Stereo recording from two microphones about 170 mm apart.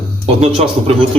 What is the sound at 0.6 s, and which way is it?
Speech, 35° right (ahead or behind).